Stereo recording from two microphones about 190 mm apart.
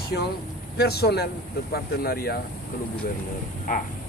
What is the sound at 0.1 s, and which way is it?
Speech, 55° left (ahead or behind).